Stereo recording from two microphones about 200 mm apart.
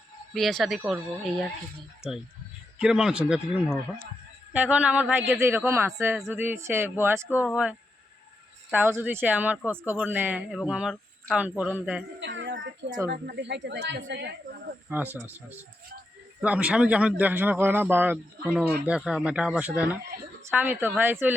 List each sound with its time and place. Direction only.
0.3 s speech: centre (ahead or behind)
2.0 s speech: 5° right (ahead or behind)
12.2 s a sound: 60° right (ahead or behind)
13.1 s speech: 50° right (ahead or behind)
14.8 s speech: 10° right (ahead or behind)
16.4 s speech: 5° right (ahead or behind)